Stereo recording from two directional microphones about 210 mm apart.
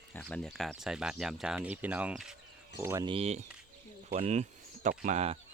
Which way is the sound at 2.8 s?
15° right (ahead or behind).